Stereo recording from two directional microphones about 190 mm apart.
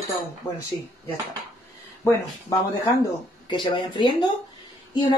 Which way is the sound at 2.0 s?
15° left (ahead or behind).